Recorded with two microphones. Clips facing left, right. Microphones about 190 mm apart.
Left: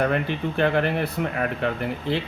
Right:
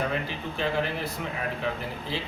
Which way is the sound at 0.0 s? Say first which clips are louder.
Left 7 dB; 60° left (ahead or behind).